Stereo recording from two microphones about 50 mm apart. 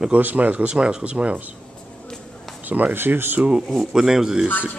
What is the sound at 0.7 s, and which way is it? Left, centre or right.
Speech, centre.